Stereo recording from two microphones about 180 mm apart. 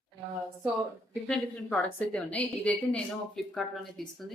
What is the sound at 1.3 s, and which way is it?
A woman's voice, 5° left (ahead or behind).